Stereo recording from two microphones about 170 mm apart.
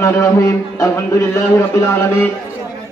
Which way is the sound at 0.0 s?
15° left (ahead or behind).